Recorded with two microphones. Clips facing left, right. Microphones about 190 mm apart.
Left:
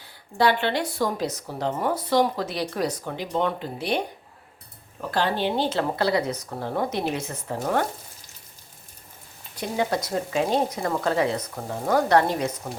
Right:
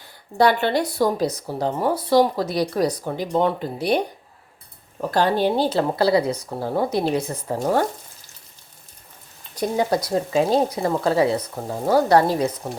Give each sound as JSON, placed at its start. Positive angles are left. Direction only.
{"t": 0.3, "sound": "speech", "side_deg": -45}
{"t": 9.6, "sound": "speech", "side_deg": -40}